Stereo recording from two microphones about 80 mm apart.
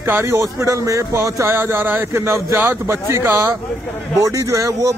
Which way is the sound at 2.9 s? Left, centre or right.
Right.